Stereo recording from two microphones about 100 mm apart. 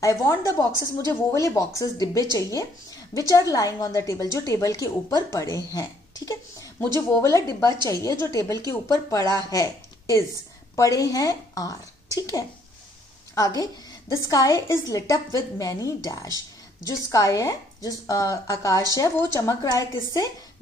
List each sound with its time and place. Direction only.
0.0 s a woman's voice: 30° left (ahead or behind)